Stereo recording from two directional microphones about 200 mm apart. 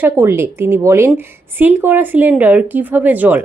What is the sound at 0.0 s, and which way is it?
A woman's voice, 10° right (ahead or behind).